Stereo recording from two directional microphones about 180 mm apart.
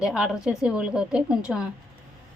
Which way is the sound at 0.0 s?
5° right (ahead or behind).